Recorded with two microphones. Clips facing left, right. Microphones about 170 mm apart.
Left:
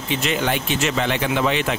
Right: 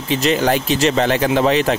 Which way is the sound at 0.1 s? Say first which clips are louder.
Right 6 dB; 35° right (ahead or behind).